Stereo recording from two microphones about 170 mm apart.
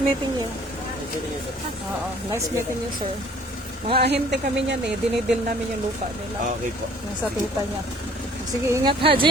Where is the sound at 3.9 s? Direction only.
80° right.